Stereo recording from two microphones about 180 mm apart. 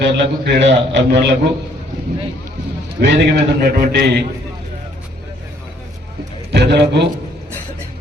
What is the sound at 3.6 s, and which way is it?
Speech, 55° right (ahead or behind).